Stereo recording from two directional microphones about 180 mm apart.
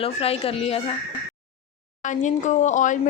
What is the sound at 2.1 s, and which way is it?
Speech, 45° left (ahead or behind).